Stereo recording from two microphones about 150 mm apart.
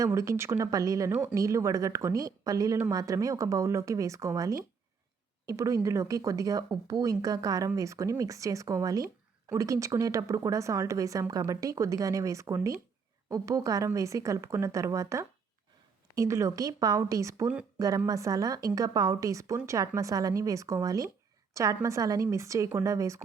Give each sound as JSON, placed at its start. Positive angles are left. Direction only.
{"t": 0.0, "sound": "speech", "side_deg": -20}